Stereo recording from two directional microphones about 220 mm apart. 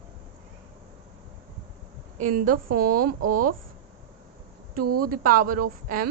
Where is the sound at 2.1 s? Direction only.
35° right (ahead or behind).